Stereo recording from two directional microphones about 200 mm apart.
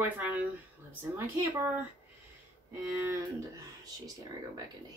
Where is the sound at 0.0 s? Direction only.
10° right (ahead or behind).